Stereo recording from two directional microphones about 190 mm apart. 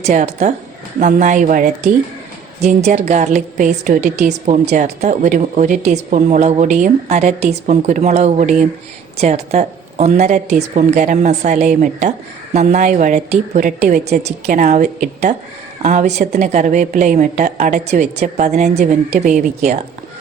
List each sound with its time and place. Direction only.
0.0 s a woman's voice: 35° right (ahead or behind)